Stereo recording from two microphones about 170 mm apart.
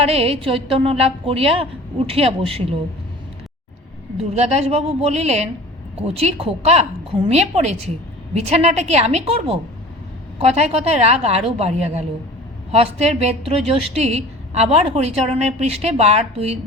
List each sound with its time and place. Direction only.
0.0 s a woman's voice: 35° right (ahead or behind)
4.2 s a woman's voice: 40° right (ahead or behind)